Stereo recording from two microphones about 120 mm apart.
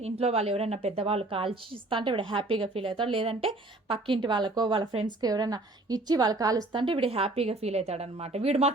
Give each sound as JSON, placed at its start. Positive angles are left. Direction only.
{"t": 0.0, "sound": "a woman's voice", "side_deg": -60}